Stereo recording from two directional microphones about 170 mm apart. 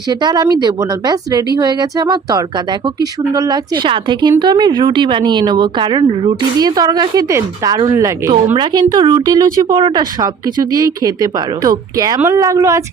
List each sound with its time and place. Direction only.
0.1 s a woman's voice: 25° right (ahead or behind)